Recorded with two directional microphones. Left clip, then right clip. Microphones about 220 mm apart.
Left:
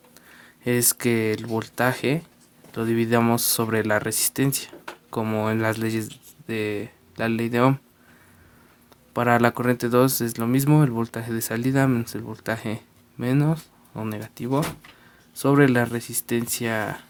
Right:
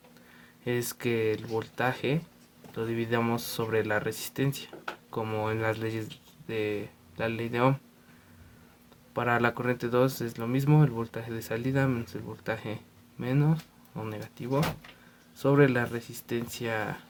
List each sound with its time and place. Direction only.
0.6 s speech: 45° left (ahead or behind)
9.1 s speech: 45° left (ahead or behind)